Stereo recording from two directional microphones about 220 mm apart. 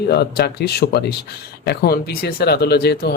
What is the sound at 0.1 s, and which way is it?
Speech, 45° left (ahead or behind).